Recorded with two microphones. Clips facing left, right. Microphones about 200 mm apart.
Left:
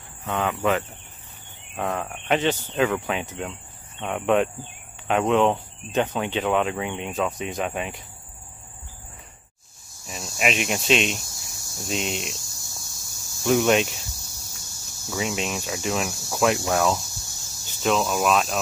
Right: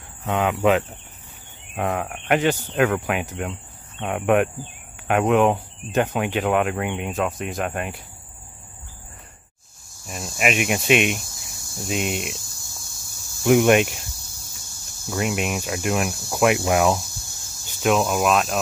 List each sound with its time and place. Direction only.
0.2 s speech: 15° right (ahead or behind)
1.9 s speech: 10° right (ahead or behind)
10.3 s speech: 5° right (ahead or behind)
13.4 s speech: 15° right (ahead or behind)
13.8 s speech: 55° right (ahead or behind)
15.0 s speech: 5° right (ahead or behind)